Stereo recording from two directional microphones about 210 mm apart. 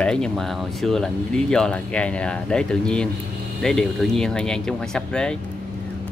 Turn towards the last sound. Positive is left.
turn(degrees=5)  # may be behind; listen again after turning